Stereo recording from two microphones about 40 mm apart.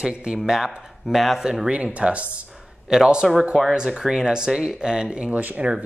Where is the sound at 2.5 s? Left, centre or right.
Centre.